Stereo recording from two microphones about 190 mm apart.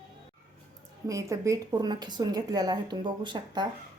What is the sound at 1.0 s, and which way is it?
Speech, 15° right (ahead or behind).